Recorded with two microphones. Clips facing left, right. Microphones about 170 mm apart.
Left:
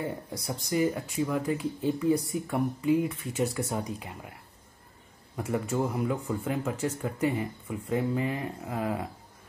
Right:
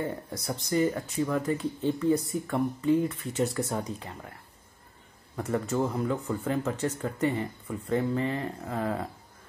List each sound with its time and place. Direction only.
0.0 s speech: 5° left (ahead or behind)
5.3 s speech: 10° left (ahead or behind)